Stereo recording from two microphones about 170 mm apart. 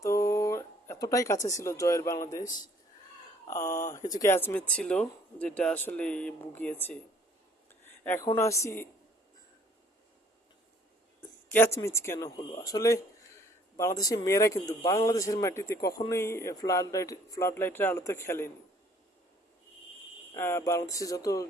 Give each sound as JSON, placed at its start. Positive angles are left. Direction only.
{"t": 0.0, "sound": "a man's voice", "side_deg": 20}
{"t": 7.9, "sound": "a sound", "side_deg": 15}
{"t": 8.3, "sound": "a man's voice", "side_deg": 15}
{"t": 11.2, "sound": "a man's voice", "side_deg": 10}
{"t": 20.3, "sound": "speech", "side_deg": 15}